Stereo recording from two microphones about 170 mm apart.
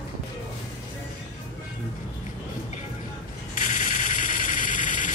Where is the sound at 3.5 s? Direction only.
50° left (ahead or behind).